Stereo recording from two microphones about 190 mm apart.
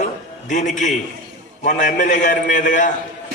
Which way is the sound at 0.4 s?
40° left (ahead or behind).